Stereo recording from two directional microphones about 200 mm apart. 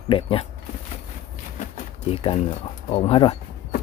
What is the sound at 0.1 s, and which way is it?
Speech, 25° left (ahead or behind).